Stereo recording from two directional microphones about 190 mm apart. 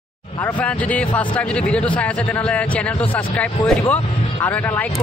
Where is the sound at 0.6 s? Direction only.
5° left (ahead or behind).